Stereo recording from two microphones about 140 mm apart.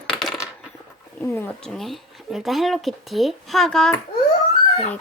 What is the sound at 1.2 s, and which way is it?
Speech, 15° left (ahead or behind).